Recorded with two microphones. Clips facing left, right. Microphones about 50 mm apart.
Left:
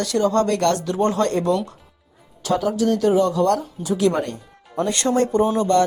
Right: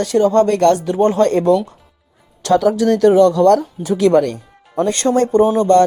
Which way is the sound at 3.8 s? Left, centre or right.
Right.